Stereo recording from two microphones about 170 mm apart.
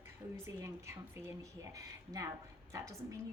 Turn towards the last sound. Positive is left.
turn(degrees=-20)  # may be behind; listen again after turning